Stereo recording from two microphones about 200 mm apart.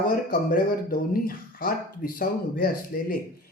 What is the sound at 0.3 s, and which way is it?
Speech, 45° left (ahead or behind).